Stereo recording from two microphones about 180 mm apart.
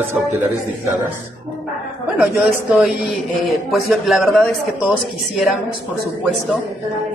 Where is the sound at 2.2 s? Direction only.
5° right (ahead or behind).